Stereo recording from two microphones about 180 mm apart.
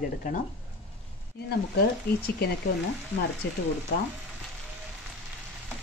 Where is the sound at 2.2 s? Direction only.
60° left (ahead or behind).